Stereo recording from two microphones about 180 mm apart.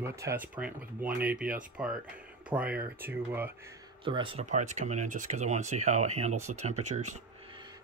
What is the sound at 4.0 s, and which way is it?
Speech, 30° right (ahead or behind).